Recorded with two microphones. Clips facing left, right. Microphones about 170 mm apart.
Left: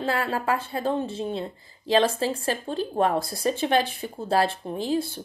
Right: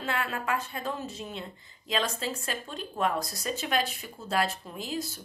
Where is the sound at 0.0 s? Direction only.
30° left (ahead or behind).